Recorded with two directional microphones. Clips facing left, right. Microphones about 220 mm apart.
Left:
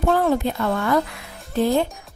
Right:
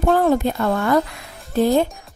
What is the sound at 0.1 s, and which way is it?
A woman's voice, 45° right (ahead or behind).